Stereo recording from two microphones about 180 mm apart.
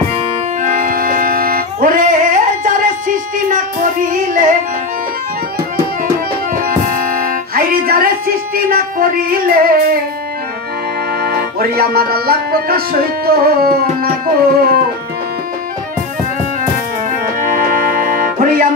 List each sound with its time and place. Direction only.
0.7 s accordion: 50° right (ahead or behind)
6.5 s music: 50° right (ahead or behind)
11.2 s music: 60° right (ahead or behind)
13.8 s music: 45° right (ahead or behind)
17.4 s music: 50° right (ahead or behind)